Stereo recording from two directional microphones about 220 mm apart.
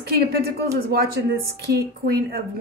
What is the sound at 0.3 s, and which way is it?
Speech, 45° right (ahead or behind).